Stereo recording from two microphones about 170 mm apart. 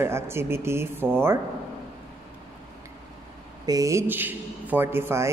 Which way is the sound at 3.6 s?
20° right (ahead or behind).